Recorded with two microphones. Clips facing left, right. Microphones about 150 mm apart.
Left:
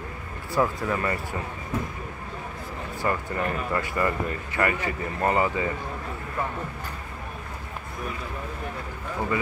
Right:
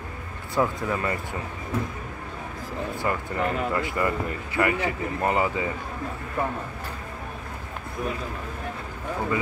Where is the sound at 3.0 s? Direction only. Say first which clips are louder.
Left 1 dB; 15° right (ahead or behind).